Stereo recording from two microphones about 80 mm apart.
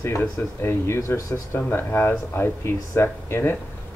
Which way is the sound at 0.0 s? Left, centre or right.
Left.